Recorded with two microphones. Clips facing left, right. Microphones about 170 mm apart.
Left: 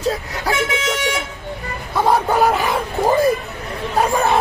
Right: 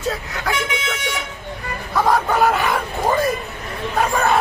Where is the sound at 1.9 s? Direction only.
25° left (ahead or behind).